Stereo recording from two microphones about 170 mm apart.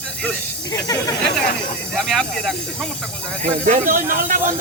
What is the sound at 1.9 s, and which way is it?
Speech, 5° left (ahead or behind).